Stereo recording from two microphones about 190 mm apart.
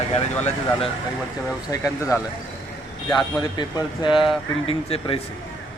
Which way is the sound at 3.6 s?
25° left (ahead or behind).